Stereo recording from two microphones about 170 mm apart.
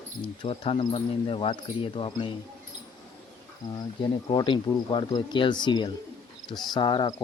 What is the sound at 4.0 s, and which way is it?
Speech, 25° left (ahead or behind).